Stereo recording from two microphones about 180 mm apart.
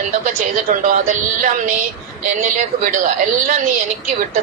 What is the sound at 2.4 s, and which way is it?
Speech, 45° right (ahead or behind).